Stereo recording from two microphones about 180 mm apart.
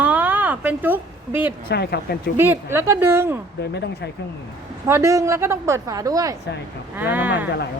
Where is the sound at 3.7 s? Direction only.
70° left (ahead or behind).